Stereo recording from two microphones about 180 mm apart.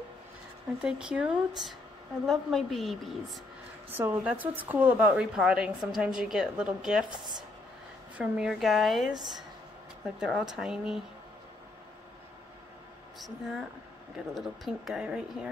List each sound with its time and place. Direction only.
0.7 s a woman's voice: 5° right (ahead or behind)
3.9 s a woman's voice: 10° right (ahead or behind)
8.2 s a woman's voice: 5° right (ahead or behind)
10.2 s a woman's voice: 5° right (ahead or behind)
14.1 s a woman's voice: centre (ahead or behind)